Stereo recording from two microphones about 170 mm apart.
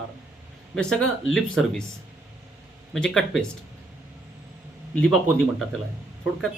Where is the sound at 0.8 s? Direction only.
5° left (ahead or behind).